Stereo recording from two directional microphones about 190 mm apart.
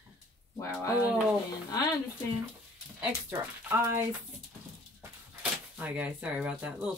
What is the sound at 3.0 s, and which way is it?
Speech, 10° right (ahead or behind).